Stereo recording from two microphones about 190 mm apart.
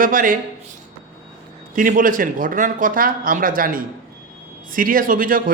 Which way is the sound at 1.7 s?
45° right (ahead or behind).